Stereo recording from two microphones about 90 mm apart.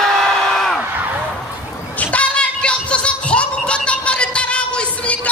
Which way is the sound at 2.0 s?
15° left (ahead or behind).